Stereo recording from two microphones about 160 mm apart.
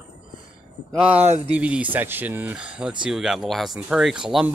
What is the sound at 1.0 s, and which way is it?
Speech, 10° right (ahead or behind).